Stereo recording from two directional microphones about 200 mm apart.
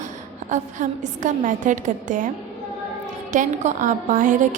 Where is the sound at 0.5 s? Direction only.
40° right (ahead or behind).